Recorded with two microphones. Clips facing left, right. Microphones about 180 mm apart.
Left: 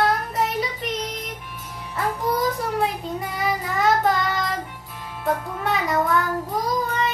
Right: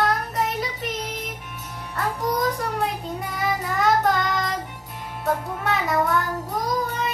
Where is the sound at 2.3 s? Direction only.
Centre (ahead or behind).